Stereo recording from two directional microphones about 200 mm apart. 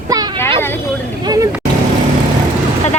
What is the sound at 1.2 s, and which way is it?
Speech, 20° right (ahead or behind).